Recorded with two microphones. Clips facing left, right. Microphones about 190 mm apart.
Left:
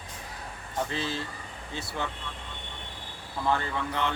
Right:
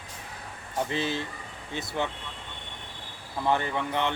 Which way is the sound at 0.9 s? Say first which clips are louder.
Right 3 dB; 20° right (ahead or behind).